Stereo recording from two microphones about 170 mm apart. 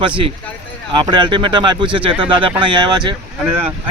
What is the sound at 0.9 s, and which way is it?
Speech, 25° right (ahead or behind).